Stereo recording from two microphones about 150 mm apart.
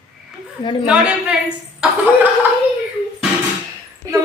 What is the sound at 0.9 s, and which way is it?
A woman's voice, 5° right (ahead or behind).